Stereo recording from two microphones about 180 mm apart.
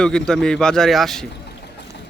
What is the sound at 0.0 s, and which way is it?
A man's voice, 5° left (ahead or behind).